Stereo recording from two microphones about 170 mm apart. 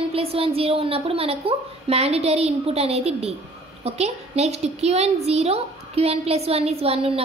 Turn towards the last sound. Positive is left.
turn(degrees=-35)  # may be behind; listen again after turning